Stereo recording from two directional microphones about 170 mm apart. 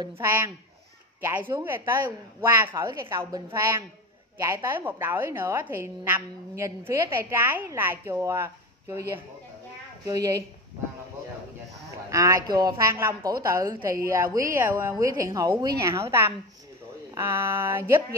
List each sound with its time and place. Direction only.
0.0 s a woman's voice: 15° right (ahead or behind)
1.6 s a woman's voice: 10° right (ahead or behind)
12.1 s a woman's voice: 20° right (ahead or behind)